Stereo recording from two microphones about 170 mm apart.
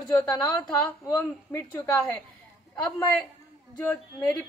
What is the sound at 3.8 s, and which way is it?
Speech, 20° left (ahead or behind).